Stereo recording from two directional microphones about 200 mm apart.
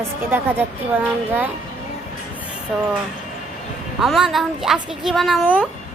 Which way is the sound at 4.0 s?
Centre (ahead or behind).